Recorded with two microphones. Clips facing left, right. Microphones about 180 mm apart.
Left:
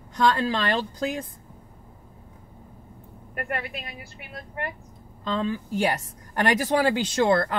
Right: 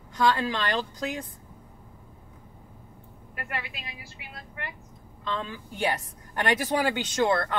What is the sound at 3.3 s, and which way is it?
A woman's voice, 45° left (ahead or behind).